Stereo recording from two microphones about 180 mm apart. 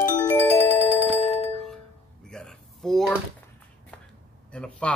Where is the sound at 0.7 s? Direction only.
35° left (ahead or behind).